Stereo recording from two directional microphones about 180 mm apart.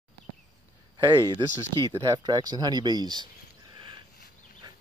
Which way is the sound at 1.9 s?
20° right (ahead or behind).